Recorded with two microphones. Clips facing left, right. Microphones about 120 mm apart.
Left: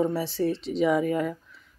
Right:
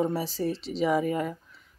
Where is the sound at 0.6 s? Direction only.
Centre (ahead or behind).